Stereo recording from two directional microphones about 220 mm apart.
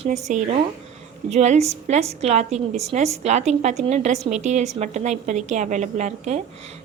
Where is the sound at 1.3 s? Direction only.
30° right (ahead or behind).